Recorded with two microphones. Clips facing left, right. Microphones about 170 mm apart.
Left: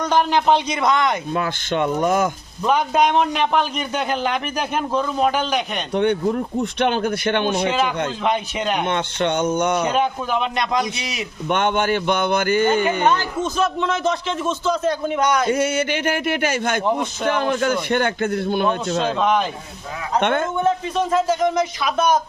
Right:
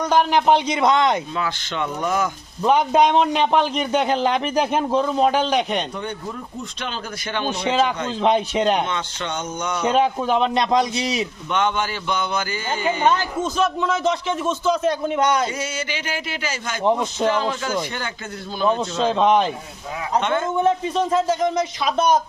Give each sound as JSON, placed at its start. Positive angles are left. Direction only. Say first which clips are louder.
{"t": 0.0, "sound": "a man's voice", "louder": "even", "side_deg": -5}
{"t": 1.4, "sound": "speech", "louder": "left 4 dB", "side_deg": 50}
{"t": 2.6, "sound": "a man's voice", "louder": "right 1 dB", "side_deg": -20}
{"t": 5.9, "sound": "speech", "louder": "left 11 dB", "side_deg": 70}
{"t": 7.7, "sound": "a man's voice", "louder": "right 1 dB", "side_deg": -30}
{"t": 8.9, "sound": "speech", "louder": "left 6 dB", "side_deg": 60}
{"t": 9.9, "sound": "a man's voice", "louder": "right 2 dB", "side_deg": -30}
{"t": 11.4, "sound": "speech", "louder": "left 5 dB", "side_deg": 55}
{"t": 13.6, "sound": "a man's voice", "louder": "even", "side_deg": -15}
{"t": 15.4, "sound": "speech", "louder": "left 8 dB", "side_deg": 60}
{"t": 19.1, "sound": "a man's voice", "louder": "right 4 dB", "side_deg": -25}
{"t": 20.1, "sound": "speech", "louder": "left 2 dB", "side_deg": 60}
{"t": 21.1, "sound": "a man's voice", "louder": "left 3 dB", "side_deg": -30}